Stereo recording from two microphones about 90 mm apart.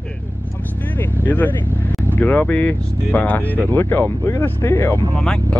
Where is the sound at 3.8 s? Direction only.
30° left (ahead or behind).